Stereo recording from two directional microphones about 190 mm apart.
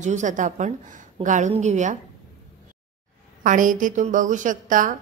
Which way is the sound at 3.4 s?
45° right (ahead or behind).